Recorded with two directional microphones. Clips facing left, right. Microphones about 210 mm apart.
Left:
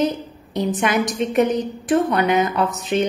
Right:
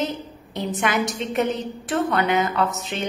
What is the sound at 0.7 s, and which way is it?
A woman's voice, 20° left (ahead or behind).